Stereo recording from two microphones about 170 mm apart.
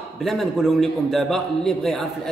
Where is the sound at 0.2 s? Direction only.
Centre (ahead or behind).